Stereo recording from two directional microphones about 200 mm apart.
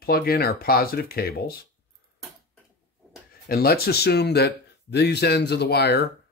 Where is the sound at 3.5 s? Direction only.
50° left (ahead or behind).